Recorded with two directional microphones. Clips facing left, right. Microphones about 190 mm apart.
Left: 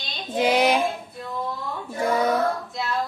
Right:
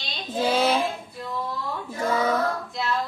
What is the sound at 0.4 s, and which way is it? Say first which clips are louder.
Child singing: left 2 dB; 15° left (ahead or behind).